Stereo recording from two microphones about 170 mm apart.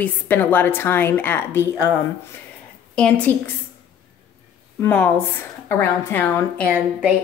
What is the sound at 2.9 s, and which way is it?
Speech, 10° left (ahead or behind).